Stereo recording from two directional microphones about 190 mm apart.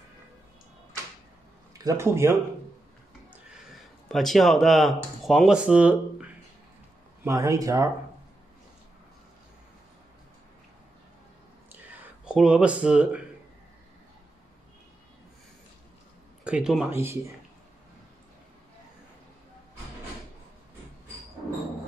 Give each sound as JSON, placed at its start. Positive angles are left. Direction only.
{"t": 1.8, "sound": "speech", "side_deg": -15}
{"t": 4.1, "sound": "speech", "side_deg": 0}
{"t": 12.3, "sound": "speech", "side_deg": -5}
{"t": 16.4, "sound": "speech", "side_deg": -5}